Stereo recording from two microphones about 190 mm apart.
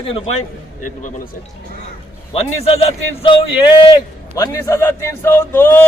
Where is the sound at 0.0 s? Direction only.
35° left (ahead or behind).